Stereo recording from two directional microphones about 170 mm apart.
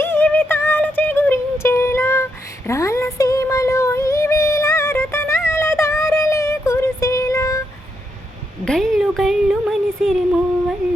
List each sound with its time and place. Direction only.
0.0 s music: 15° left (ahead or behind)
2.6 s child singing: 20° left (ahead or behind)
8.6 s a sound: centre (ahead or behind)